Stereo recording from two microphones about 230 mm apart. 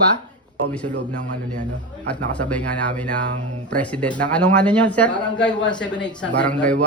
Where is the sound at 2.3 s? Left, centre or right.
Centre.